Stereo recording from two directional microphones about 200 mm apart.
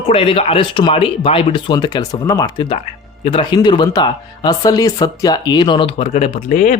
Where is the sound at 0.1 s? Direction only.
30° left (ahead or behind).